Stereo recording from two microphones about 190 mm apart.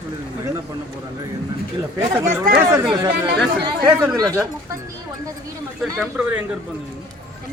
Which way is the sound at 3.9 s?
10° right (ahead or behind).